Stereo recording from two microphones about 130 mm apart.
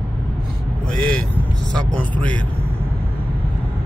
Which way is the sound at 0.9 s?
90° right.